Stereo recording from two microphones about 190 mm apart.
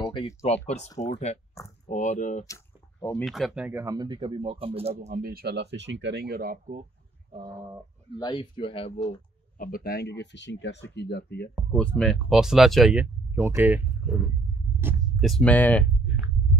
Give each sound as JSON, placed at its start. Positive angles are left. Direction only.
{"t": 0.0, "sound": "a sound", "side_deg": 20}
{"t": 1.0, "sound": "speech", "side_deg": 35}
{"t": 2.4, "sound": "a sound", "side_deg": 15}
{"t": 3.3, "sound": "speech", "side_deg": 0}
{"t": 5.1, "sound": "speech", "side_deg": -50}
{"t": 7.3, "sound": "speech", "side_deg": -20}
{"t": 8.2, "sound": "speech", "side_deg": 25}
{"t": 9.6, "sound": "speech", "side_deg": 50}
{"t": 11.5, "sound": "speech", "side_deg": 5}
{"t": 15.1, "sound": "speech", "side_deg": 0}